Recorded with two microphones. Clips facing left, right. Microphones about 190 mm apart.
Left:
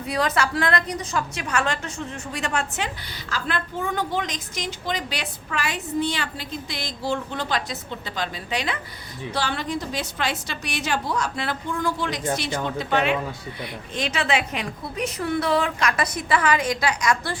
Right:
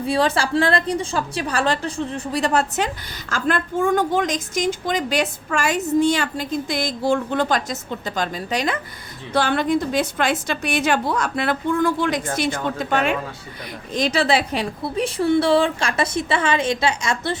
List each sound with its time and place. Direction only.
0.0 s a woman's voice: 30° right (ahead or behind)